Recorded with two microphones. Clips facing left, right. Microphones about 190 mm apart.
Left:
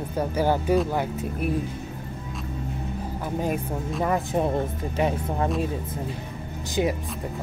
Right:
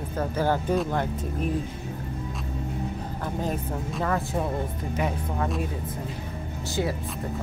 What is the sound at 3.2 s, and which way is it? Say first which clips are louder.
Speech: left 2 dB; 10° left (ahead or behind).